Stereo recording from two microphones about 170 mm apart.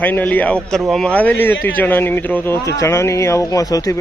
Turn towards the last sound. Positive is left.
turn(degrees=20)  # may be behind; listen again after turning